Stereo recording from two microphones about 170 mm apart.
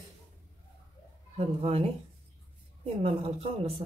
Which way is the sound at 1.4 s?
35° right (ahead or behind).